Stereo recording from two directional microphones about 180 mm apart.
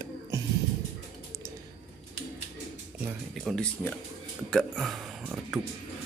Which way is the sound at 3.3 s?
Centre (ahead or behind).